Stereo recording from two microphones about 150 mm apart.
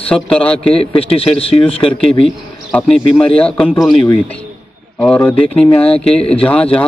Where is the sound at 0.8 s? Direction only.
40° left (ahead or behind).